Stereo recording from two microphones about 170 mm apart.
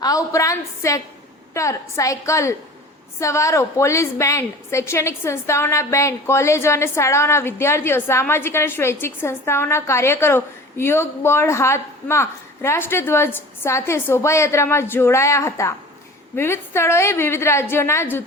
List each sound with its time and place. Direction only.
0.0 s a woman's voice: 20° left (ahead or behind)